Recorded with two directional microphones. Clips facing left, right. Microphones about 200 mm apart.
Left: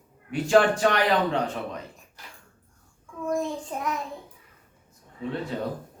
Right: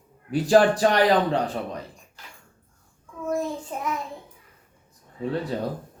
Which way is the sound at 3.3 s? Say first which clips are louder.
Right 1 dB; 5° right (ahead or behind).